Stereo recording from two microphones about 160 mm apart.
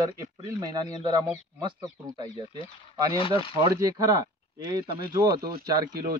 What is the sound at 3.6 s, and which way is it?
Speech, 25° right (ahead or behind).